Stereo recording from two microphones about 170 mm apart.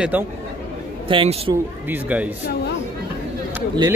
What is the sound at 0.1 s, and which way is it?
Speech, 10° right (ahead or behind).